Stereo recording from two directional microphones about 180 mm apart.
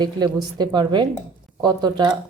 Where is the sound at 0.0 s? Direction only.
25° right (ahead or behind).